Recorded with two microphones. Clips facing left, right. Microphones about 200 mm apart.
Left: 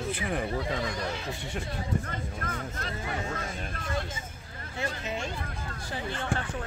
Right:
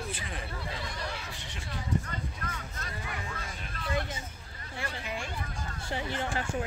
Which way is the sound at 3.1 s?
40° left (ahead or behind).